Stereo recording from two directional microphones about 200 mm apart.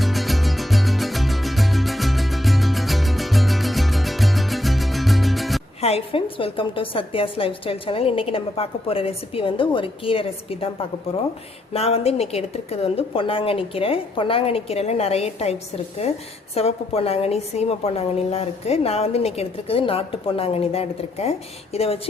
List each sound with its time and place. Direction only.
0.0 s music: centre (ahead or behind)
5.8 s a woman's voice: 30° left (ahead or behind)
11.7 s a woman's voice: 30° left (ahead or behind)